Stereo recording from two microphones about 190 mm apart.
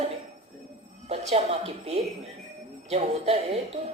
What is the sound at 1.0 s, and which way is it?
A woman's voice, 35° right (ahead or behind).